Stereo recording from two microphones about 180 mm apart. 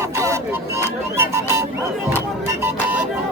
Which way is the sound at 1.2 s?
15° right (ahead or behind).